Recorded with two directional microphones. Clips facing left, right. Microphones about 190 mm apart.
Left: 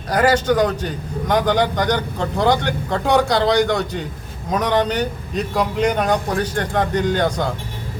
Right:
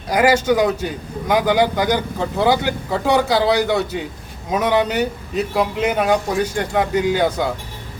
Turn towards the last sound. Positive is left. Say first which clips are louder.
# right 1 dB
turn(degrees=-5)  # may be behind; listen again after turning